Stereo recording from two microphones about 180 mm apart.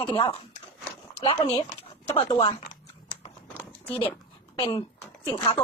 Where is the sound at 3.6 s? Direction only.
10° left (ahead or behind).